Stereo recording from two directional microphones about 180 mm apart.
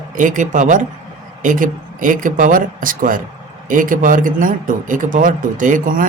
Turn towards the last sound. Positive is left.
turn(degrees=-50)  # may be behind; listen again after turning